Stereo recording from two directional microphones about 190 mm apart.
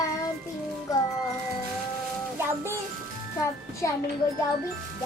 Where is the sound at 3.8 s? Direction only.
15° left (ahead or behind).